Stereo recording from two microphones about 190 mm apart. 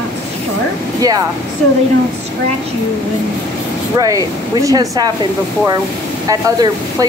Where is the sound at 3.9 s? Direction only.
20° right (ahead or behind).